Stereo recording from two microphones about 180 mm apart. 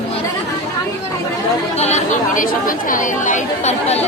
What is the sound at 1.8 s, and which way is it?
Chatter, 45° left (ahead or behind).